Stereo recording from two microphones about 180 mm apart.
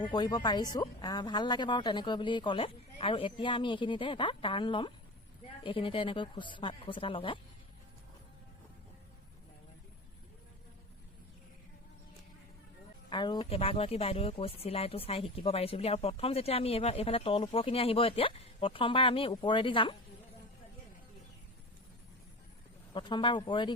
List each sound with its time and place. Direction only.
0.0 s speech: 25° left (ahead or behind)
13.1 s a woman's voice: 25° left (ahead or behind)
23.0 s speech: 25° left (ahead or behind)